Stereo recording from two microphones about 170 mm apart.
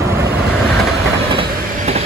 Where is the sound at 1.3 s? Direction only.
35° right (ahead or behind).